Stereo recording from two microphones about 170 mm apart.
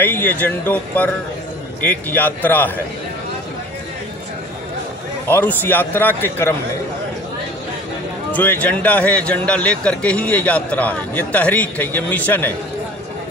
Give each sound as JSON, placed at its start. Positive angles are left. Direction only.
{"t": 0.0, "sound": "a man's voice", "side_deg": 10}
{"t": 5.3, "sound": "a man's voice", "side_deg": 10}
{"t": 8.3, "sound": "a man's voice", "side_deg": 10}